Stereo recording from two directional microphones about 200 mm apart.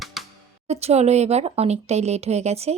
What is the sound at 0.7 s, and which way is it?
Speech, 30° right (ahead or behind).